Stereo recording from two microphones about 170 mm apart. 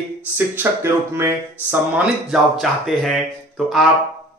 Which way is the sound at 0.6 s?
15° right (ahead or behind).